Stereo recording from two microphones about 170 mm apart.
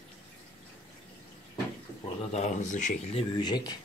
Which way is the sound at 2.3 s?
45° left (ahead or behind).